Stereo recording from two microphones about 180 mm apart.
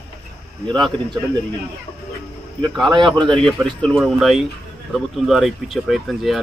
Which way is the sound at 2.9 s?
25° right (ahead or behind).